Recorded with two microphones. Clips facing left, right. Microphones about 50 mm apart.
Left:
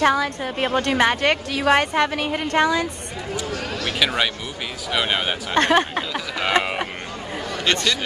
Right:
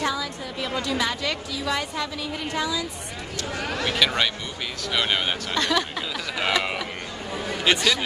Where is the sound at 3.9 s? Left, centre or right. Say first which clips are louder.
Left 2 dB; centre.